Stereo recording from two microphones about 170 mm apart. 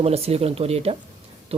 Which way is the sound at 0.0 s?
35° right (ahead or behind).